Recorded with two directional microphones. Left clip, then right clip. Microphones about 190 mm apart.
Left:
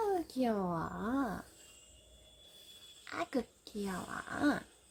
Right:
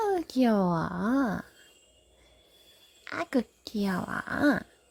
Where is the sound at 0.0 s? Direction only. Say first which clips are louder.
Right 7 dB; 50° right (ahead or behind).